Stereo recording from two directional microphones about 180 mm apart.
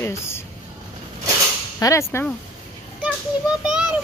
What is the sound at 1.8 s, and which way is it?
Speech, 15° left (ahead or behind).